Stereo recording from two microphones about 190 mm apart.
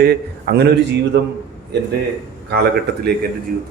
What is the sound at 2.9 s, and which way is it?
Speech, 60° right (ahead or behind).